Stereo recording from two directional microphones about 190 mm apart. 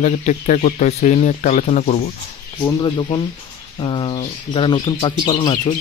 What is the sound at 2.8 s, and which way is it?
Speech, 25° left (ahead or behind).